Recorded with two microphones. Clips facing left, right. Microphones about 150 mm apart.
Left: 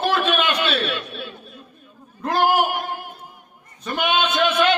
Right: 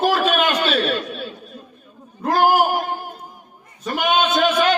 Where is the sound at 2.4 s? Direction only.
40° right (ahead or behind).